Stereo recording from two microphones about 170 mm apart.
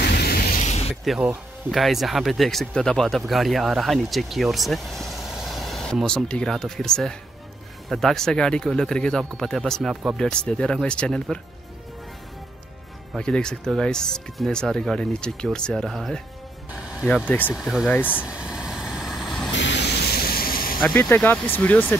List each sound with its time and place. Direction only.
0.1 s a sound: 70° left (ahead or behind)
0.6 s a sound: 40° left (ahead or behind)
1.0 s speech: centre (ahead or behind)
13.1 s speech: 5° left (ahead or behind)
16.7 s music: 5° right (ahead or behind)
17.0 s speech: 5° left (ahead or behind)
17.6 s speech: centre (ahead or behind)
17.9 s speech: 10° left (ahead or behind)
18.2 s vehicle: 5° right (ahead or behind)
19.5 s vehicle: 90° left; by 20.7 s 60° left (ahead or behind)
21.0 s speech: 10° left (ahead or behind)